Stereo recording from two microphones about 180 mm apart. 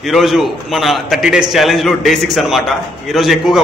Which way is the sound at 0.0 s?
Centre (ahead or behind).